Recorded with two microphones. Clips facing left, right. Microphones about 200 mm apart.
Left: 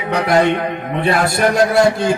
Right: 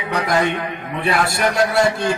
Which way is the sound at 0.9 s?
35° left (ahead or behind).